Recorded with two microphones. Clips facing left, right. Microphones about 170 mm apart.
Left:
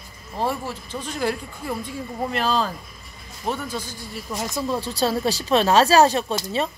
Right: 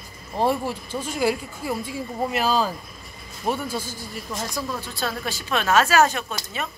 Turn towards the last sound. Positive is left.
turn(degrees=30)  # may be behind; listen again after turning